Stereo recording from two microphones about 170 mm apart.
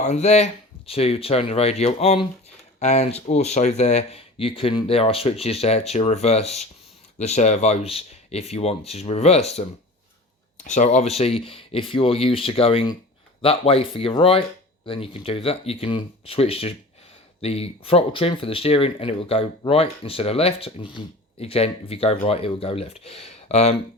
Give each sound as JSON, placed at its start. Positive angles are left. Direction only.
{"t": 0.0, "sound": "speech", "side_deg": 40}